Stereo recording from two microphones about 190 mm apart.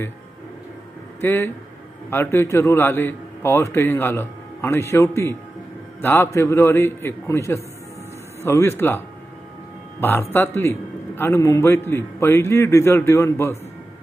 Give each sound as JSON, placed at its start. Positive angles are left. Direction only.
{"t": 1.2, "sound": "a man's voice", "side_deg": 15}